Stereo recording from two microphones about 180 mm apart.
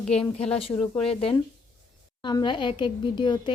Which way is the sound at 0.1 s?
35° left (ahead or behind).